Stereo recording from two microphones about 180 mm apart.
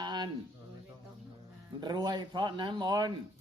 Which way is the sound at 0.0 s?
25° right (ahead or behind).